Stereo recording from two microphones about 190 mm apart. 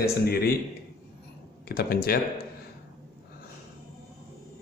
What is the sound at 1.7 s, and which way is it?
Speech, 55° left (ahead or behind).